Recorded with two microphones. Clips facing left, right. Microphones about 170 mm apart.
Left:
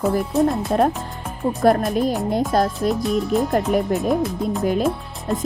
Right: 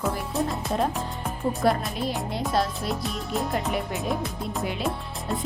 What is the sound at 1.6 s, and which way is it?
Speech, 50° left (ahead or behind).